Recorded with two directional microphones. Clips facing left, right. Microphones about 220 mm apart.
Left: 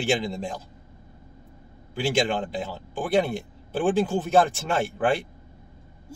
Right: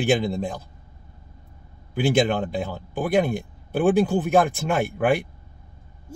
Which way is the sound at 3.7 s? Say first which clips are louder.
Right 4 dB; 10° right (ahead or behind).